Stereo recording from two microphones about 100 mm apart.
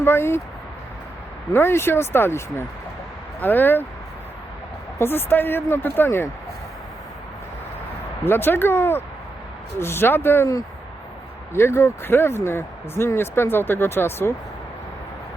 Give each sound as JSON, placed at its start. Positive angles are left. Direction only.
{"t": 0.0, "sound": "speech", "side_deg": 25}
{"t": 1.5, "sound": "speech", "side_deg": 25}
{"t": 4.9, "sound": "speech", "side_deg": 20}
{"t": 8.2, "sound": "speech", "side_deg": 20}
{"t": 11.5, "sound": "speech", "side_deg": 25}